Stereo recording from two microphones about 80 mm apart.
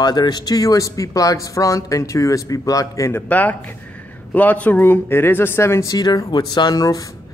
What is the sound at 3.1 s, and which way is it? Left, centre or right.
Speech, left.